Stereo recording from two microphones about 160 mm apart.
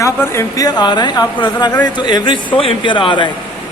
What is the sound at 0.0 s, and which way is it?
A man's voice, 20° left (ahead or behind).